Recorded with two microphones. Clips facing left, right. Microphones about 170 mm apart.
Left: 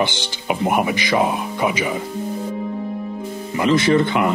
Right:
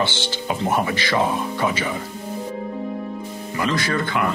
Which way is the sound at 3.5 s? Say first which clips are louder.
Left 7 dB; 20° left (ahead or behind).